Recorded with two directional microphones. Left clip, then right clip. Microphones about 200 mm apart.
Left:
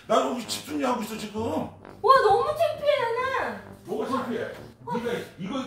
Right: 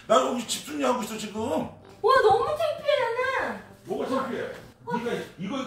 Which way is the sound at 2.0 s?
Centre (ahead or behind).